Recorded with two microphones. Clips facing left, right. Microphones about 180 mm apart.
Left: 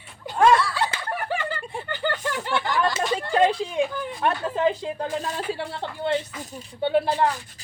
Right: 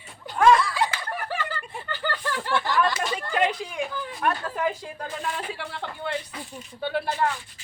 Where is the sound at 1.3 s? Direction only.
15° left (ahead or behind).